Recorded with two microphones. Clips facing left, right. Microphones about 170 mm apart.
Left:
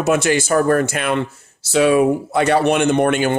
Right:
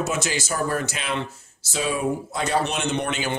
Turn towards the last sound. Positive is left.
turn(degrees=55)  # may be behind; listen again after turning